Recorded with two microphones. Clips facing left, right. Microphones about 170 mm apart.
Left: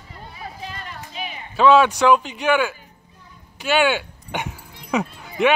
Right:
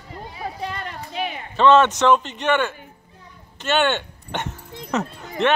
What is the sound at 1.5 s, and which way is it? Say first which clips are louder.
Speech: even; 5° left (ahead or behind).